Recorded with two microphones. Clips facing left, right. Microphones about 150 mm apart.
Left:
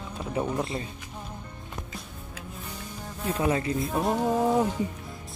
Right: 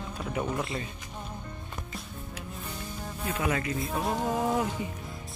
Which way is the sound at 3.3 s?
30° left (ahead or behind).